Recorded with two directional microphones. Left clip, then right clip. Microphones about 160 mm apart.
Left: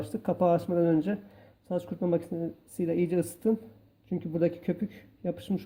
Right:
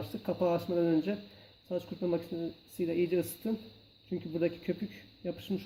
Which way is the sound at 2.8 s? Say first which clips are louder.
Left 2 dB; 40° left (ahead or behind).